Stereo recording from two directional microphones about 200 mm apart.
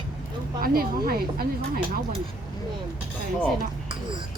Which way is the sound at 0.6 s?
45° right (ahead or behind).